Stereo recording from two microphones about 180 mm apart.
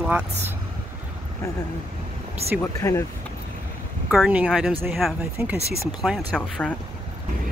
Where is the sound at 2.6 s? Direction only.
15° left (ahead or behind).